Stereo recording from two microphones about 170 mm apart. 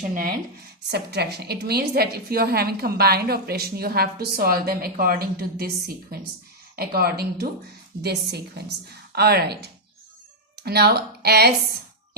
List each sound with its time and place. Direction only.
0.9 s a woman's voice: 70° right (ahead or behind)